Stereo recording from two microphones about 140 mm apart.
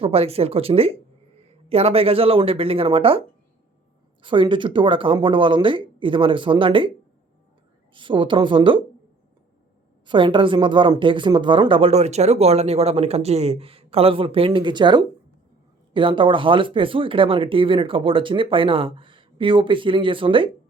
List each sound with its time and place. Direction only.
0.0 s a woman's voice: 45° right (ahead or behind)
7.9 s a woman's voice: 35° right (ahead or behind)
10.1 s a woman's voice: 35° right (ahead or behind)